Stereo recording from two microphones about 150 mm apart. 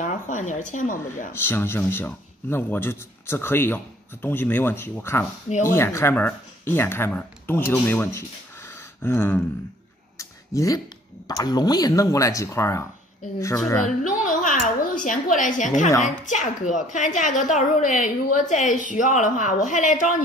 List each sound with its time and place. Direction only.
0.0 s a woman's voice: 55° left (ahead or behind)
1.3 s a man's voice: 15° left (ahead or behind)
10.1 s a sound: 20° left (ahead or behind)
11.2 s speech: 25° left (ahead or behind)
13.8 s a sound: 60° left (ahead or behind)
16.0 s speech: 55° left (ahead or behind)